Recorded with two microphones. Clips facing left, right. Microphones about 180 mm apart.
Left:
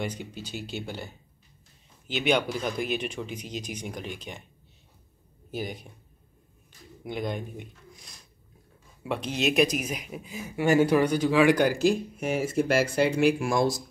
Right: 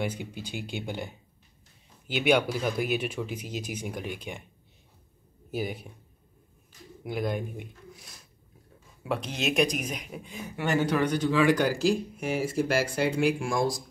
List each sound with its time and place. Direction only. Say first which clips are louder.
0.0 s speech: right 1 dB; 10° right (ahead or behind)
5.5 s speech: right 2 dB; 5° right (ahead or behind)
7.1 s speech: right 1 dB; 5° right (ahead or behind); by 13.1 s 25° left (ahead or behind)